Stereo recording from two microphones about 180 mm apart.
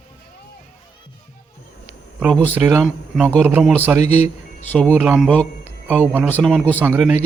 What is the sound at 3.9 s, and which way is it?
Speech, 35° left (ahead or behind).